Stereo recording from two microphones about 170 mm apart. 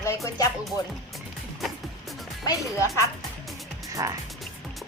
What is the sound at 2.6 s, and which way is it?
Speech, 15° left (ahead or behind).